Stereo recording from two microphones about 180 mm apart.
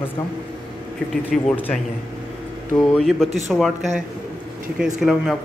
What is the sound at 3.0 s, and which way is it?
Speech, 5° left (ahead or behind).